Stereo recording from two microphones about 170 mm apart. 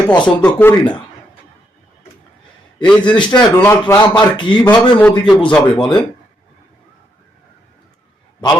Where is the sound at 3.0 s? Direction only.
25° left (ahead or behind).